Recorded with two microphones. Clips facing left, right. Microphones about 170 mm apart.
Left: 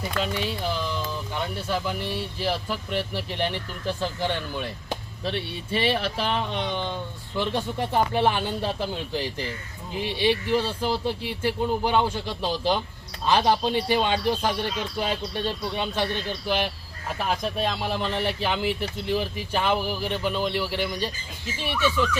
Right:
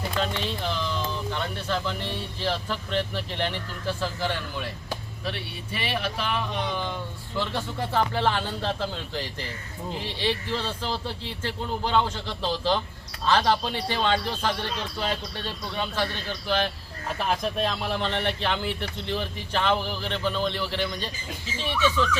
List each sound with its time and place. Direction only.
0.2 s speech: 10° left (ahead or behind)
17.2 s speech: centre (ahead or behind)